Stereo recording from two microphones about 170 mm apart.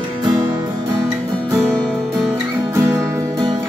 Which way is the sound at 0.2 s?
20° right (ahead or behind).